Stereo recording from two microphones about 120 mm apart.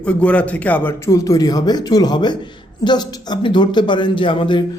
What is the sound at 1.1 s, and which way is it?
Speech, 25° left (ahead or behind).